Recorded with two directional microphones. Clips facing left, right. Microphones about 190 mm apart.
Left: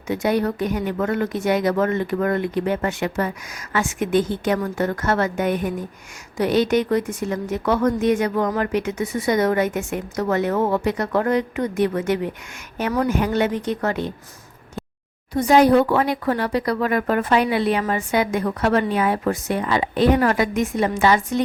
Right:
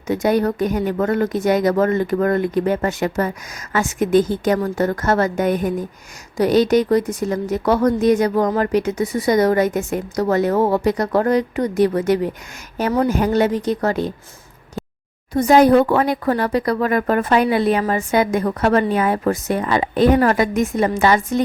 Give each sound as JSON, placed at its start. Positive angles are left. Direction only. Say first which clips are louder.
{"t": 0.1, "sound": "a woman's voice", "louder": "right 3 dB", "side_deg": -40}
{"t": 15.3, "sound": "speech", "louder": "right 3 dB", "side_deg": -45}